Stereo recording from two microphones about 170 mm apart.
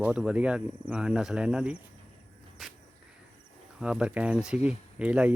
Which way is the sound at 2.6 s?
Centre (ahead or behind).